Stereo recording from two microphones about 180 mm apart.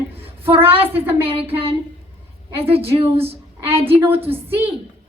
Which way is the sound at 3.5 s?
15° right (ahead or behind).